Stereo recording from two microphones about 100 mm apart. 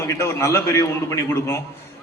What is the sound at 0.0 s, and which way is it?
A man's voice, 25° left (ahead or behind).